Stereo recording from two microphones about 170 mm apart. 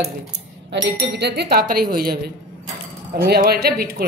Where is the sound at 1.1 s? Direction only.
75° right (ahead or behind).